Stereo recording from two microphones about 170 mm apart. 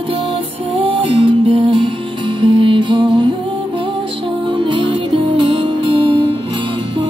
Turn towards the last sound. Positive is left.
turn(degrees=-30)  # may be behind; listen again after turning